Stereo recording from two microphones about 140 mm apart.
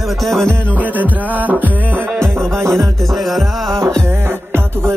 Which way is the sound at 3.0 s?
Centre (ahead or behind).